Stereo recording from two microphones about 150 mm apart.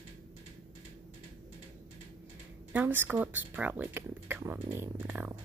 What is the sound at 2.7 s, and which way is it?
Speech, 10° right (ahead or behind).